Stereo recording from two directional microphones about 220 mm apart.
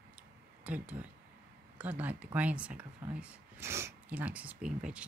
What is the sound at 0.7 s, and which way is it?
Speech, 5° right (ahead or behind).